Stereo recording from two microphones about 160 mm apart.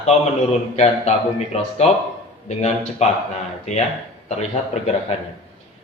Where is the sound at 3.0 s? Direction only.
45° left (ahead or behind).